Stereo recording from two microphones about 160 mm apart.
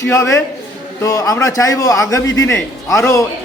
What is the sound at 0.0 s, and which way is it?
A man's voice, 20° left (ahead or behind).